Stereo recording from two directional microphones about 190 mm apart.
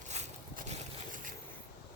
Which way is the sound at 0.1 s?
35° right (ahead or behind).